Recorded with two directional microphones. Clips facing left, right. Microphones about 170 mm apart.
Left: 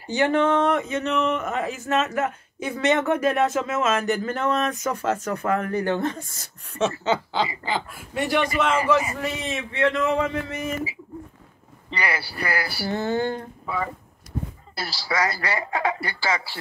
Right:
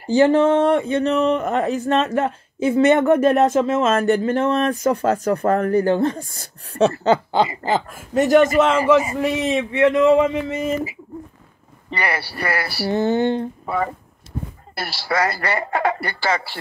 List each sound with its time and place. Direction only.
0.0 s speech: 30° right (ahead or behind)
2.8 s a man's voice: 55° right (ahead or behind)
3.3 s a man's voice: 30° right (ahead or behind)
8.8 s a man's voice: 25° right (ahead or behind)
11.9 s speech: 65° right (ahead or behind)
12.9 s a man's voice: 20° right (ahead or behind)
14.8 s speech: 60° right (ahead or behind)